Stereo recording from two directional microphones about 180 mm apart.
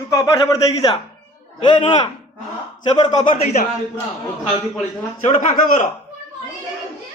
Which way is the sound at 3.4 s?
40° left (ahead or behind).